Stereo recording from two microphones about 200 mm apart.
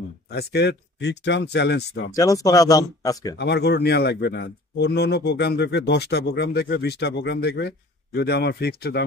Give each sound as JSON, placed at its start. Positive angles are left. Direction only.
{"t": 0.3, "sound": "speech", "side_deg": 55}
{"t": 2.1, "sound": "speech", "side_deg": 15}
{"t": 3.3, "sound": "speech", "side_deg": 60}